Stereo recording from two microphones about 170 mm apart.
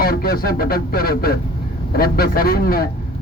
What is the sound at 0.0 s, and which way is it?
Speech, 60° left (ahead or behind).